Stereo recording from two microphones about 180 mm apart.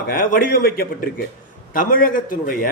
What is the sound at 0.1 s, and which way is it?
A man's voice, 50° left (ahead or behind).